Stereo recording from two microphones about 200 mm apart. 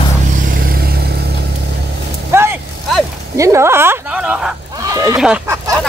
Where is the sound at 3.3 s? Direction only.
15° right (ahead or behind).